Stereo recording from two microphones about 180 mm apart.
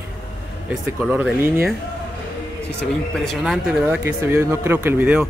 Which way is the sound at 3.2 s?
Centre (ahead or behind).